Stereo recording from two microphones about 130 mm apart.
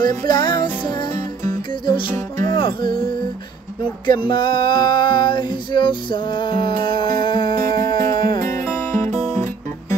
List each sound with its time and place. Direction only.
0.1 s music: 35° left (ahead or behind)
2.1 s music: 25° left (ahead or behind)
2.5 s music: 40° left (ahead or behind)
4.0 s male singing: 35° left (ahead or behind)
9.1 s music: 20° left (ahead or behind)